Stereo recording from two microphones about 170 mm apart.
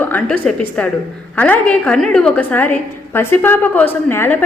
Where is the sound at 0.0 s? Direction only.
10° left (ahead or behind).